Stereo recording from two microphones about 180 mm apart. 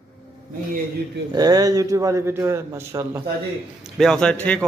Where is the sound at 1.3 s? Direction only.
20° right (ahead or behind).